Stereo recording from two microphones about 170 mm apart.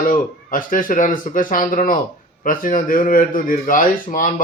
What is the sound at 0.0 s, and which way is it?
Speech, 55° left (ahead or behind).